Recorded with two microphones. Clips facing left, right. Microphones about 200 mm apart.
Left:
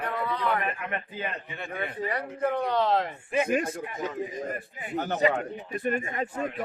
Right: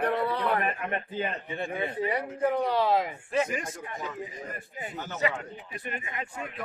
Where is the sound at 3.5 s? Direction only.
60° left (ahead or behind).